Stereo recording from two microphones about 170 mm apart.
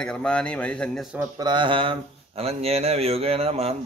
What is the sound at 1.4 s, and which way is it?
Speech, 25° right (ahead or behind).